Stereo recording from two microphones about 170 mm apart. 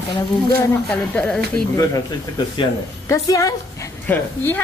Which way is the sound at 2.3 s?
30° left (ahead or behind).